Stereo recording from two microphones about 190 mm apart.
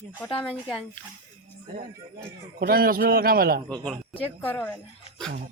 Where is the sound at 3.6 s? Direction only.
5° left (ahead or behind).